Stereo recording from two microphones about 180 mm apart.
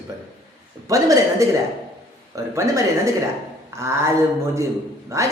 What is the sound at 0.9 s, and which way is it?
A man's voice, 20° right (ahead or behind).